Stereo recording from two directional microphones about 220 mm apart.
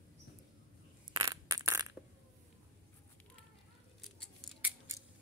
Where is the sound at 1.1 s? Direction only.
15° right (ahead or behind).